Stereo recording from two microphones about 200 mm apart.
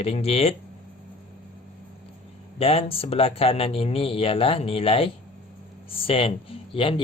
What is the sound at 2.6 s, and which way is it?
Speech, 30° left (ahead or behind).